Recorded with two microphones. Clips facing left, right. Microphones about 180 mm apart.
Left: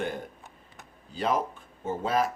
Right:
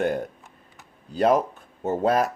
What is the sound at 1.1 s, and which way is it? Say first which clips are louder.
Speech: right 8 dB; 45° right (ahead or behind).